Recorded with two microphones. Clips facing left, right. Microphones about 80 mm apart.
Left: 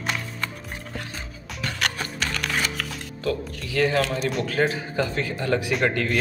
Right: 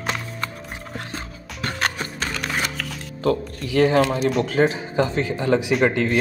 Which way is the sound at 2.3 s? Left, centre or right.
Centre.